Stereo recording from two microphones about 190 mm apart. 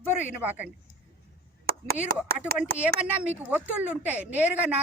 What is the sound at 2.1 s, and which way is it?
Speech, 55° right (ahead or behind).